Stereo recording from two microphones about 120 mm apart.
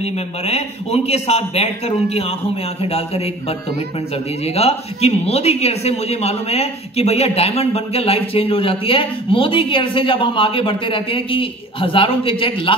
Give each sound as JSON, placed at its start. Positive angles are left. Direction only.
{"t": 0.0, "sound": "a man's voice", "side_deg": 60}